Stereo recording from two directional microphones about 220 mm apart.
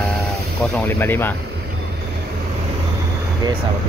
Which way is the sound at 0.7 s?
10° left (ahead or behind).